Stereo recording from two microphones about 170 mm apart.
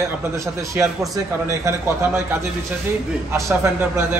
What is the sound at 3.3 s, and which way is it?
Speech, 15° right (ahead or behind).